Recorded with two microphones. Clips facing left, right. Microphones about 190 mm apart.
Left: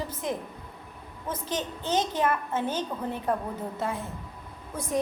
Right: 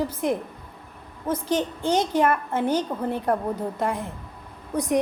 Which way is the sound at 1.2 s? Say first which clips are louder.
Right 8 dB; 10° right (ahead or behind).